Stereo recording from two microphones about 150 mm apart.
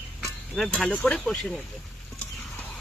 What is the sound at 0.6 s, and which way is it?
Speech, 5° left (ahead or behind).